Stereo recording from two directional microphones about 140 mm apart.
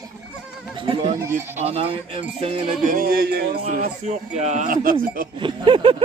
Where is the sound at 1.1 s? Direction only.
20° right (ahead or behind).